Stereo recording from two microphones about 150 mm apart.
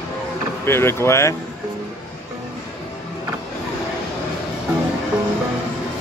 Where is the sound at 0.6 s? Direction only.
15° left (ahead or behind).